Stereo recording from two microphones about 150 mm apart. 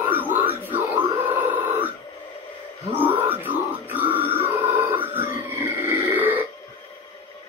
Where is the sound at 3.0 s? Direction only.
10° right (ahead or behind).